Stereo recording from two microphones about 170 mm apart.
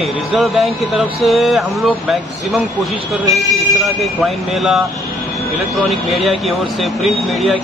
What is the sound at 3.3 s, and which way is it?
Speech, centre (ahead or behind).